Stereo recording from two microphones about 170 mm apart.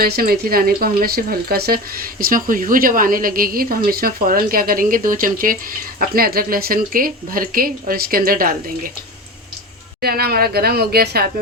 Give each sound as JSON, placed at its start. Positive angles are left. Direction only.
{"t": 0.0, "sound": "speech", "side_deg": -60}
{"t": 10.0, "sound": "speech", "side_deg": -65}